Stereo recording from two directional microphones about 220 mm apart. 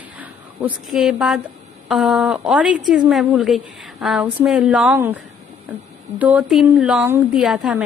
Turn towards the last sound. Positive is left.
turn(degrees=0)  # may be behind; listen again after turning